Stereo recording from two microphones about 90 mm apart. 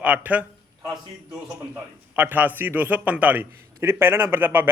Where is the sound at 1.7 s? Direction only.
20° right (ahead or behind).